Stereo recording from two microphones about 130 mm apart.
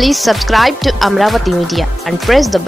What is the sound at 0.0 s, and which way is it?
Speech, centre (ahead or behind).